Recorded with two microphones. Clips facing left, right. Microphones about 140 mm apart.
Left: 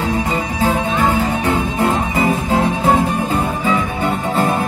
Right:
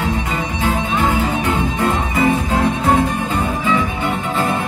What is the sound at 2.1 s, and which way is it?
Music, 30° left (ahead or behind).